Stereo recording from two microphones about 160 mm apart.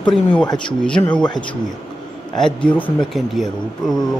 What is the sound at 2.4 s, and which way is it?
Speech, 5° left (ahead or behind).